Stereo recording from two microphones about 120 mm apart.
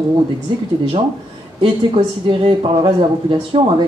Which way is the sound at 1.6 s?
45° right (ahead or behind).